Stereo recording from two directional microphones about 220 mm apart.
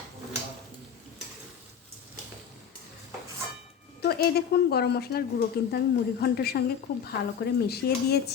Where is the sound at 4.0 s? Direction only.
45° left (ahead or behind).